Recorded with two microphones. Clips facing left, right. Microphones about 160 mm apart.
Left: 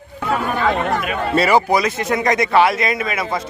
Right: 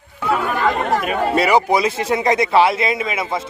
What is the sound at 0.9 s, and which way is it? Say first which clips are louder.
Speech: right 2 dB; 40° right (ahead or behind).